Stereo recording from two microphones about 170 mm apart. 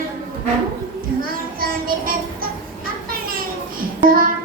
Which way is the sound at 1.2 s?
60° right (ahead or behind).